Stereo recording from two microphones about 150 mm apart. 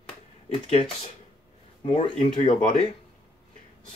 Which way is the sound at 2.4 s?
55° left (ahead or behind).